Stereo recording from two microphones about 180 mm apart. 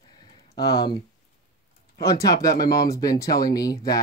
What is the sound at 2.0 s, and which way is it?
Speech, 20° left (ahead or behind).